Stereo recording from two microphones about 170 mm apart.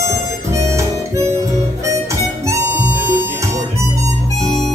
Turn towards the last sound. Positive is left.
turn(degrees=-15)  # may be behind; listen again after turning